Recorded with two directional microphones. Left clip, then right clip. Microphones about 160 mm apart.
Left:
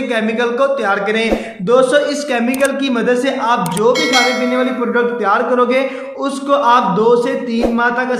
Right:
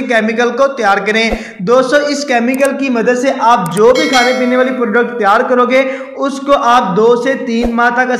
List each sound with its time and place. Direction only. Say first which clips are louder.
0.1 s a man's voice: right 6 dB; 25° right (ahead or behind)
3.3 s a man's voice: right 5 dB; 30° right (ahead or behind)
3.9 s speech: right 3 dB; centre (ahead or behind)
4.6 s a man's voice: right 4 dB; 25° right (ahead or behind)